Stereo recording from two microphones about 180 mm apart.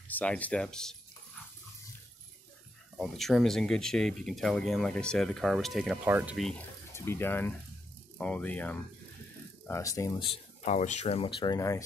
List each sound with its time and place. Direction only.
0.1 s speech: 5° left (ahead or behind)
3.0 s speech: centre (ahead or behind)
6.0 s speech: 10° right (ahead or behind)
6.9 s speech: 15° left (ahead or behind)